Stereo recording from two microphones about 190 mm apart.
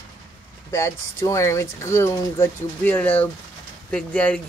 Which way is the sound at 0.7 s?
15° left (ahead or behind).